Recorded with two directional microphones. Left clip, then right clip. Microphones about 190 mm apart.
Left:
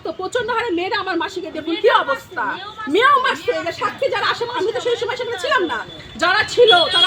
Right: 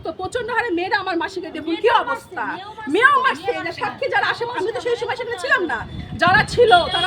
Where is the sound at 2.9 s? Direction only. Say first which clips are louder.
Left 1 dB; 25° right (ahead or behind).